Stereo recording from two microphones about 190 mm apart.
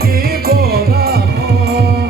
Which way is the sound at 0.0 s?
50° right (ahead or behind).